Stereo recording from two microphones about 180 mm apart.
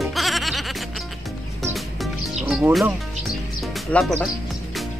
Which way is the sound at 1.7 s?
Centre (ahead or behind).